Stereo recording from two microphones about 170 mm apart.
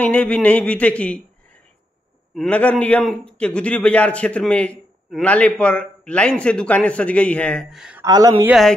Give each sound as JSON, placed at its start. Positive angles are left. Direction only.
{"t": 0.0, "sound": "a man's voice", "side_deg": 10}
{"t": 2.3, "sound": "a man's voice", "side_deg": 5}
{"t": 8.0, "sound": "speech", "side_deg": -20}
{"t": 8.5, "sound": "speech", "side_deg": 0}